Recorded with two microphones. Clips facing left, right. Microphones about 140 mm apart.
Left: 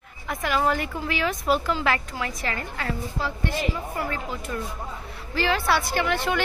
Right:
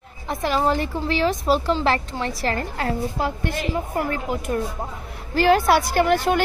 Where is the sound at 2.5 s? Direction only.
45° right (ahead or behind).